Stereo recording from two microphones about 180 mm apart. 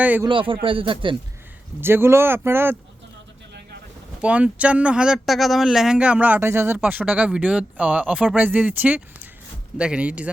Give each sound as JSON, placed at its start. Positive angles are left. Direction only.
{"t": 0.0, "sound": "speech", "side_deg": -10}
{"t": 0.3, "sound": "speech", "side_deg": -30}
{"t": 1.8, "sound": "speech", "side_deg": -15}
{"t": 4.2, "sound": "speech", "side_deg": -5}